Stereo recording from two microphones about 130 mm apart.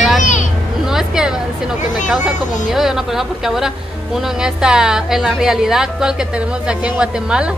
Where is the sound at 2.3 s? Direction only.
75° left (ahead or behind).